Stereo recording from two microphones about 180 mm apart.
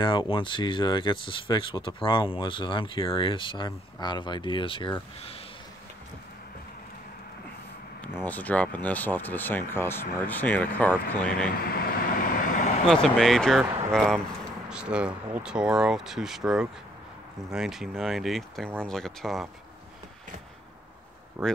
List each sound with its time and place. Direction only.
0.0 s speech: 25° left (ahead or behind)
8.2 s speech: 10° left (ahead or behind)
11.5 s vehicle: 55° left (ahead or behind)
12.8 s speech: 5° left (ahead or behind)
21.4 s speech: 5° left (ahead or behind)